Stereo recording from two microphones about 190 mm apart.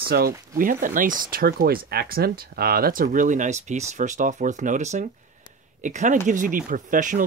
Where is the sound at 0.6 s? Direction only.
45° right (ahead or behind).